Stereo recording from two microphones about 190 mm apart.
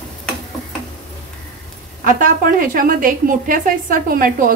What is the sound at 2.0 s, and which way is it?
A woman's voice, 45° right (ahead or behind).